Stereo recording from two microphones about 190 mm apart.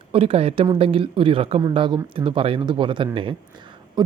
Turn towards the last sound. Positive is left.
turn(degrees=-25)  # may be behind; listen again after turning